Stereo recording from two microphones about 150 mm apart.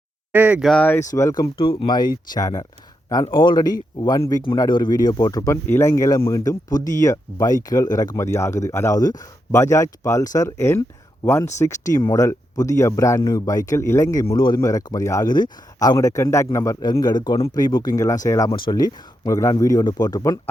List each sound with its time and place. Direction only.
0.3 s speech: 10° right (ahead or behind)
0.6 s speech: 5° left (ahead or behind); by 20.4 s 25° left (ahead or behind)